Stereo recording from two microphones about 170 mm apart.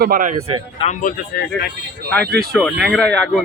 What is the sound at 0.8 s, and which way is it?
Speech, 35° left (ahead or behind).